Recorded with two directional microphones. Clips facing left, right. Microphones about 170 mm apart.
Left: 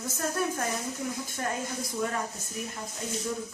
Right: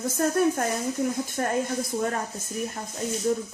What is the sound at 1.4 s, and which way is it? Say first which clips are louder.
Speech: right 5 dB; 45° right (ahead or behind).